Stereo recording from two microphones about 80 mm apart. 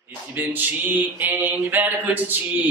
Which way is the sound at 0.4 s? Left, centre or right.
Right.